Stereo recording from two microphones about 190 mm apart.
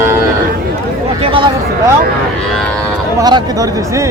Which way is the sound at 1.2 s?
25° right (ahead or behind).